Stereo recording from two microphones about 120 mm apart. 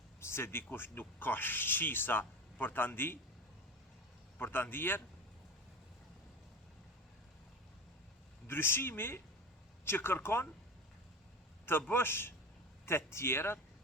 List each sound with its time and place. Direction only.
0.2 s speech: 20° left (ahead or behind)
4.4 s speech: 15° left (ahead or behind)
8.4 s speech: 20° left (ahead or behind)
11.9 s speech: 20° left (ahead or behind)